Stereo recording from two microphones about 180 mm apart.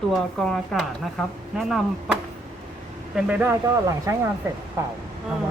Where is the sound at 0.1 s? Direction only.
Centre (ahead or behind).